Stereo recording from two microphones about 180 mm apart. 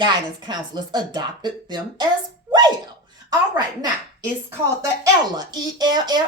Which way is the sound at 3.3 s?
20° right (ahead or behind).